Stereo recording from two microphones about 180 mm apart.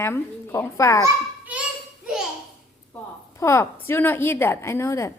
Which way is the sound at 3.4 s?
15° left (ahead or behind).